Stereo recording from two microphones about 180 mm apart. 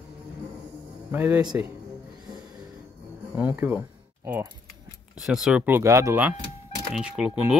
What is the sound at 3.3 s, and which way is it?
Speech, 10° right (ahead or behind).